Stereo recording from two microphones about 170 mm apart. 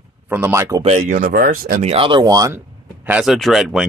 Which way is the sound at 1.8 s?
30° right (ahead or behind).